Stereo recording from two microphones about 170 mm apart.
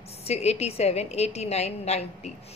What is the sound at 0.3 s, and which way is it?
A woman's voice, 40° left (ahead or behind).